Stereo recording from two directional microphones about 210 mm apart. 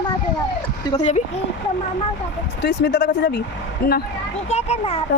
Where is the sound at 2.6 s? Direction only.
55° left (ahead or behind).